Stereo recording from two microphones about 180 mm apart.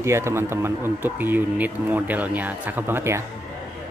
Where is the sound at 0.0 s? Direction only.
15° right (ahead or behind).